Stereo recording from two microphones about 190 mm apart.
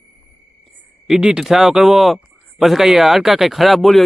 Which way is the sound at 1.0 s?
5° right (ahead or behind).